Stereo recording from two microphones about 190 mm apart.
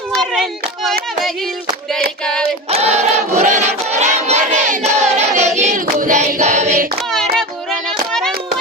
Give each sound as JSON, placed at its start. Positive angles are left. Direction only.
{"t": 2.2, "sound": "female singing", "side_deg": 5}
{"t": 2.6, "sound": "crowd", "side_deg": -35}
{"t": 4.9, "sound": "child singing", "side_deg": -35}
{"t": 7.1, "sound": "hands", "side_deg": 0}
{"t": 7.9, "sound": "child singing", "side_deg": 5}